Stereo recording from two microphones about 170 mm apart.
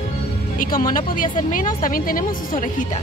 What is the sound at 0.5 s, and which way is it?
A woman's voice, 55° left (ahead or behind).